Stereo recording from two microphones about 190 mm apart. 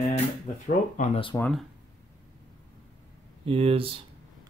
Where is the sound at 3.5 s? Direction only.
30° right (ahead or behind).